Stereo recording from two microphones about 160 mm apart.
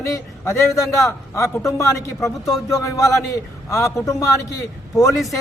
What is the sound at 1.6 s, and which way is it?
A man's voice, 20° left (ahead or behind).